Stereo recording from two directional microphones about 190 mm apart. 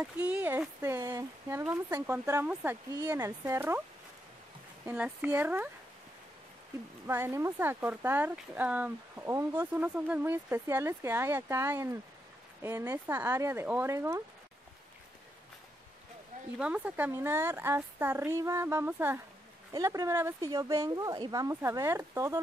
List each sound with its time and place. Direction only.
0.0 s speech: 10° right (ahead or behind)
4.9 s speech: 5° right (ahead or behind)
7.1 s speech: 15° right (ahead or behind)
16.5 s speech: 5° right (ahead or behind)